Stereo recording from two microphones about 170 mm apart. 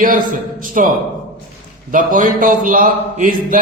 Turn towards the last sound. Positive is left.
turn(degrees=-55)  # may be behind; listen again after turning